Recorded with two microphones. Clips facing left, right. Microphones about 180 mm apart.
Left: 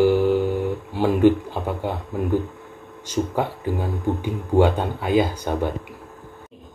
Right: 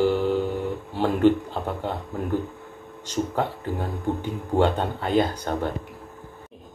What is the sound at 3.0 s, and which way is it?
Speech, 10° left (ahead or behind).